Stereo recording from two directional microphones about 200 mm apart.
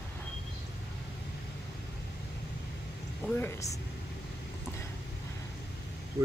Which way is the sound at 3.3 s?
15° left (ahead or behind).